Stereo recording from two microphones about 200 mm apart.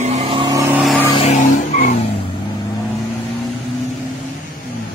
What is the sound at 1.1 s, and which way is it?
Vehicle, 35° left (ahead or behind).